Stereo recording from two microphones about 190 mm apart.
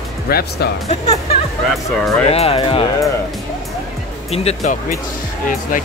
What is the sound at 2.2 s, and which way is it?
Speech, 30° left (ahead or behind).